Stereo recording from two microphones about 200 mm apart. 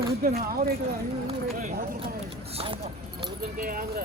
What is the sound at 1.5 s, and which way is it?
Clip-clop, 45° right (ahead or behind).